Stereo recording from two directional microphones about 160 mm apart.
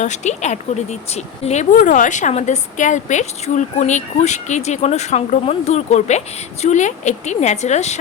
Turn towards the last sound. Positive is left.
turn(degrees=45)  # may be behind; listen again after turning